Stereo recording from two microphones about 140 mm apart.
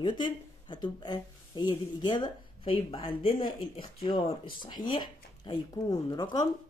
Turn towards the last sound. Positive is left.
turn(degrees=30)  # may be behind; listen again after turning